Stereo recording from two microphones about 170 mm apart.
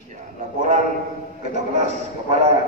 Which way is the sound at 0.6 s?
45° right (ahead or behind).